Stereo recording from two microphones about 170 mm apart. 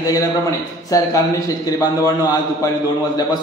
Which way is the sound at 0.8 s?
20° left (ahead or behind).